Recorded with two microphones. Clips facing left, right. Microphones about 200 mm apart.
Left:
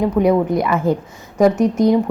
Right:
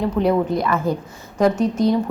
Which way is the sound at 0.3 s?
20° left (ahead or behind).